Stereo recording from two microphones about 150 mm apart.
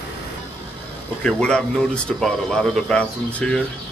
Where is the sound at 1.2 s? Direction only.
5° left (ahead or behind).